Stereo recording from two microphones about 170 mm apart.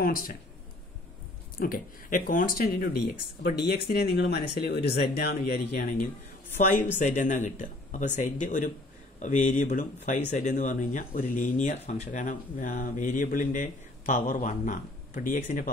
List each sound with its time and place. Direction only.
0.0 s speech: 55° left (ahead or behind)
1.6 s speech: 55° left (ahead or behind)
6.5 s speech: 45° left (ahead or behind)